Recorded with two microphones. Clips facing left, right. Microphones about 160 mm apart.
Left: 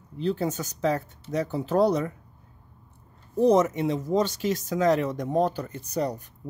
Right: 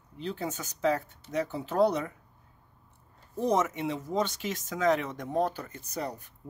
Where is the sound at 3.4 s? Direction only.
35° left (ahead or behind).